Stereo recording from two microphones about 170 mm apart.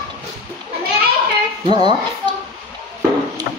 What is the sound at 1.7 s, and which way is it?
Speech, 25° right (ahead or behind).